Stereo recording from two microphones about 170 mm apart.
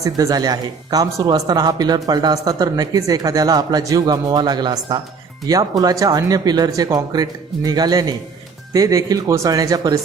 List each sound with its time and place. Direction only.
0.0 s speech: 20° right (ahead or behind)